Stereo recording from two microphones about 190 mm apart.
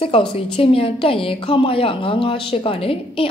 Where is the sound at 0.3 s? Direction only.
30° left (ahead or behind).